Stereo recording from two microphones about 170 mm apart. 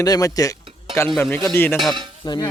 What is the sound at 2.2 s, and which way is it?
Stir, 25° left (ahead or behind).